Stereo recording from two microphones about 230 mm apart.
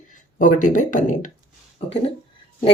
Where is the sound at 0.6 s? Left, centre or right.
Left.